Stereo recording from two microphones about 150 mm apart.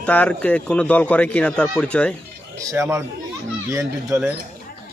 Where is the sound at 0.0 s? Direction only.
10° left (ahead or behind).